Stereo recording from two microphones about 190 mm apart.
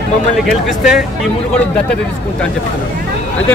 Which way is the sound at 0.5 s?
5° right (ahead or behind).